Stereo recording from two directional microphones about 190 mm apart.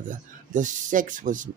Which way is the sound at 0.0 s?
40° right (ahead or behind).